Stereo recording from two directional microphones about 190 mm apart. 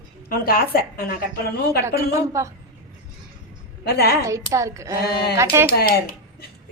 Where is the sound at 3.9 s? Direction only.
55° left (ahead or behind).